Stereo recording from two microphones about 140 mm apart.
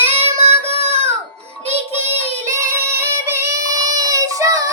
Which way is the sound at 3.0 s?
20° right (ahead or behind).